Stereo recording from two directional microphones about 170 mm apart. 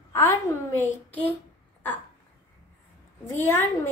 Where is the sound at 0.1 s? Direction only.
15° left (ahead or behind).